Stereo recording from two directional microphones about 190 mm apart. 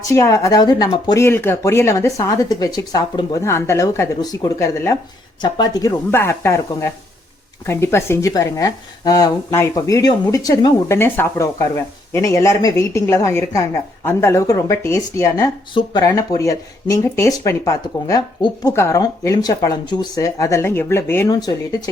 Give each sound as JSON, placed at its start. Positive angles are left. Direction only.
{"t": 0.0, "sound": "speech", "side_deg": 15}